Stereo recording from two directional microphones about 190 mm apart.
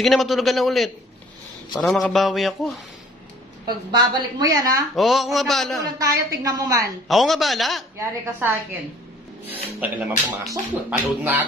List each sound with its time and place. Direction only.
0.0 s a man's voice: centre (ahead or behind)
3.6 s a woman's voice: 20° right (ahead or behind)
4.9 s a man's voice: centre (ahead or behind)
5.9 s a woman's voice: 20° right (ahead or behind)
7.1 s a man's voice: centre (ahead or behind)
8.0 s speech: 10° right (ahead or behind)
9.8 s speech: 10° right (ahead or behind)